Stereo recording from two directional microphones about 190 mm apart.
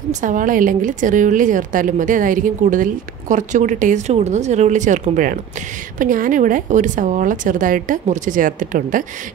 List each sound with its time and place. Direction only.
0.1 s a woman's voice: 40° right (ahead or behind)